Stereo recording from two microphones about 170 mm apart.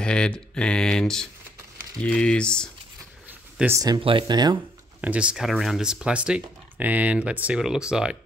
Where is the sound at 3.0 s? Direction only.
10° right (ahead or behind).